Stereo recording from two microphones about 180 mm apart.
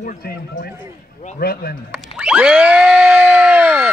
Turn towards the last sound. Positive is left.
turn(degrees=-5)  # may be behind; listen again after turning